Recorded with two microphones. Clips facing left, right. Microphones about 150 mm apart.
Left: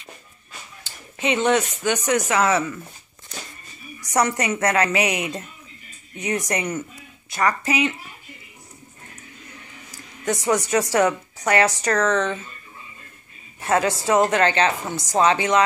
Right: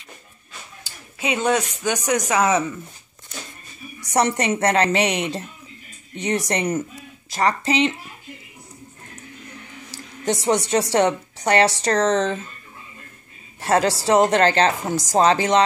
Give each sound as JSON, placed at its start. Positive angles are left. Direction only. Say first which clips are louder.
{"t": 0.8, "sound": "speech", "louder": "left 2 dB", "side_deg": -10}
{"t": 4.0, "sound": "a woman's voice", "louder": "right 1 dB", "side_deg": -30}
{"t": 10.2, "sound": "a woman's voice", "louder": "right 1 dB", "side_deg": -30}
{"t": 13.6, "sound": "a woman's voice", "louder": "right 2 dB", "side_deg": -35}